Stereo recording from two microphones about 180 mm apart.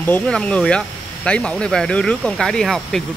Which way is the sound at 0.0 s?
10° left (ahead or behind).